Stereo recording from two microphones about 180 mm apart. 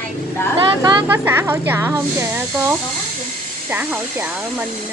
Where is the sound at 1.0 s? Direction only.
10° right (ahead or behind).